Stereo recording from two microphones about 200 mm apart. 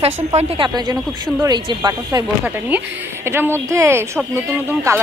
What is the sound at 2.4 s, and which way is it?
Speech, 10° right (ahead or behind).